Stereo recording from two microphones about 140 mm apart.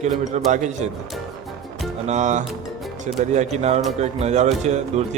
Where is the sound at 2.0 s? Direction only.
60° right (ahead or behind).